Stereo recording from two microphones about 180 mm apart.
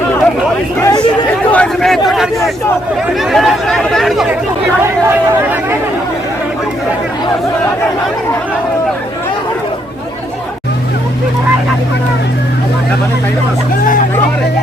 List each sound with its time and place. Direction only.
0.8 s chatter: 20° left (ahead or behind)
1.5 s a sound: 5° left (ahead or behind)
3.3 s speech: centre (ahead or behind)
5.0 s speech: 10° right (ahead or behind)